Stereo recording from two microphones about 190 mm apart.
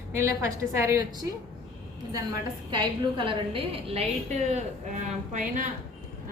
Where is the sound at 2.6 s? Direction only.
25° right (ahead or behind); by 5.6 s 40° right (ahead or behind).